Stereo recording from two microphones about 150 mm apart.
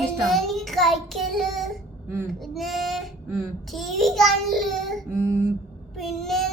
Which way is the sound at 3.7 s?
Centre (ahead or behind).